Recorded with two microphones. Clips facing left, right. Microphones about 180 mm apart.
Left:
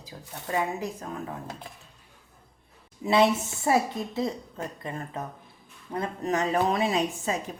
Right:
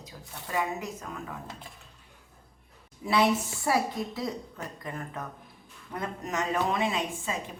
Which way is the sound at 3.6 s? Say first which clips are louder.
Left 3 dB; 25° left (ahead or behind).